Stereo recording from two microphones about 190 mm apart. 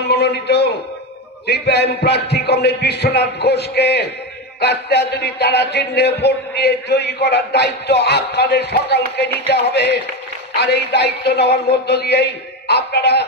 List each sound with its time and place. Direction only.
0.1 s a man's voice: 60° left (ahead or behind)